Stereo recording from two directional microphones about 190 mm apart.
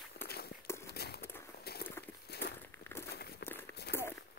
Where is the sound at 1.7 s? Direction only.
55° left (ahead or behind).